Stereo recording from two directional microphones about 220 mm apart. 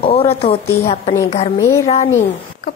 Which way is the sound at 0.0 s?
25° left (ahead or behind).